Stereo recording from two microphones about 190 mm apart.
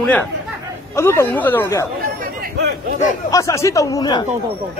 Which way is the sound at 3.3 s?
15° left (ahead or behind).